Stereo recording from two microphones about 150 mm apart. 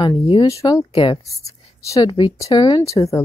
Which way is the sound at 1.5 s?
20° left (ahead or behind).